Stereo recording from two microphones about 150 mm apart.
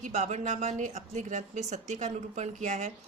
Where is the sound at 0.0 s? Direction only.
50° right (ahead or behind).